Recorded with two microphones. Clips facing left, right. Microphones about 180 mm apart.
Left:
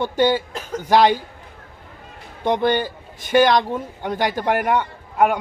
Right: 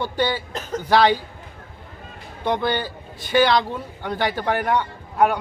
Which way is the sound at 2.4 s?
20° left (ahead or behind).